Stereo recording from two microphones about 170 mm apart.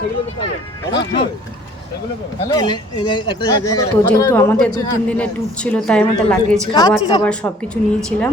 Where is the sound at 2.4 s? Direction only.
25° left (ahead or behind).